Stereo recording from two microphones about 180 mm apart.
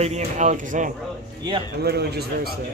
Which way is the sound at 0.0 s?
40° right (ahead or behind).